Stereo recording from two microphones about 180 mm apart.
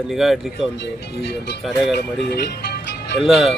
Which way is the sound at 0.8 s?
70° left (ahead or behind).